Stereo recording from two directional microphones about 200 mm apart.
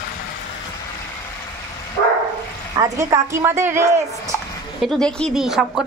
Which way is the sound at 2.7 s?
15° right (ahead or behind).